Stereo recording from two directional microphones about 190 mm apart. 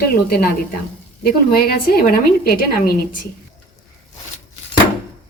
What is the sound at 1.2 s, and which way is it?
Speech, 55° left (ahead or behind).